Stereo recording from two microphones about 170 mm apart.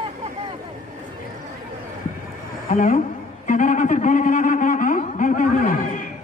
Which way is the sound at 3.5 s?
50° left (ahead or behind).